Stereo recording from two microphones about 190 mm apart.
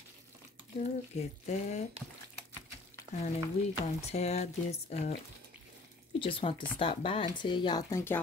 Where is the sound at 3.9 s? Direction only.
35° left (ahead or behind).